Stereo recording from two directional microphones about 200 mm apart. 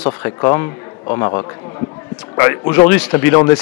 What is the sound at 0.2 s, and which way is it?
A man's voice, 15° left (ahead or behind).